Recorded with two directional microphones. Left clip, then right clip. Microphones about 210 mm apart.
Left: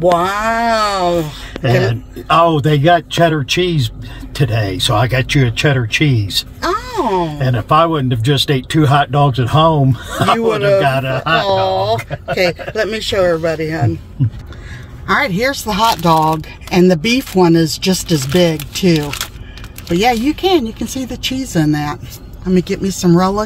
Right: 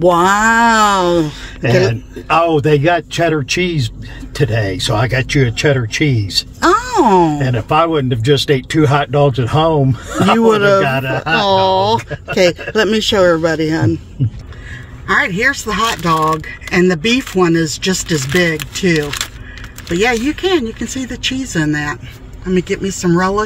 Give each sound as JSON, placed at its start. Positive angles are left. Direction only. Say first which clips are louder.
{"t": 0.0, "sound": "a man's voice", "louder": "right 3 dB", "side_deg": -40}
{"t": 6.6, "sound": "a sound", "louder": "right 8 dB", "side_deg": -50}
{"t": 7.3, "sound": "speech", "louder": "left 1 dB", "side_deg": -20}
{"t": 10.4, "sound": "a man's voice", "louder": "right 5 dB", "side_deg": -45}
{"t": 10.8, "sound": "speech", "louder": "left 1 dB", "side_deg": -15}
{"t": 11.3, "sound": "speech", "louder": "right 3 dB", "side_deg": -40}
{"t": 15.0, "sound": "speech", "louder": "right 1 dB", "side_deg": 15}
{"t": 20.1, "sound": "speech", "louder": "left 3 dB", "side_deg": 10}